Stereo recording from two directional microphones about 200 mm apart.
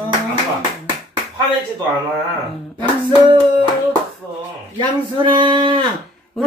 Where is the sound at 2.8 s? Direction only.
25° right (ahead or behind).